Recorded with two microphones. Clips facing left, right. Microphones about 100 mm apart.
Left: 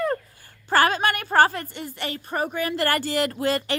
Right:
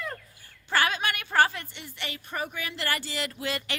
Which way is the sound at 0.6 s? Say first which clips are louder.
Left 7 dB; 40° left (ahead or behind).